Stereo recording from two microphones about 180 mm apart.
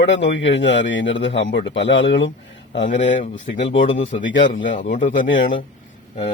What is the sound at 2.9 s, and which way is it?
Speech, 45° left (ahead or behind).